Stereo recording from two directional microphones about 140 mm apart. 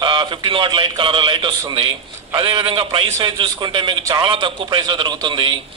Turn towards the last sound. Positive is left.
turn(degrees=-35)  # may be behind; listen again after turning